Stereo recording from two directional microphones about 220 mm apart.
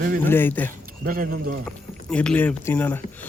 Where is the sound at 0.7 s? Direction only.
40° right (ahead or behind).